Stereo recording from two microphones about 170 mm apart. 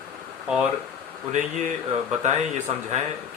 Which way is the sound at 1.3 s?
45° right (ahead or behind).